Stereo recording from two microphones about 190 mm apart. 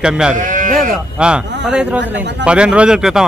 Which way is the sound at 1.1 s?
5° right (ahead or behind).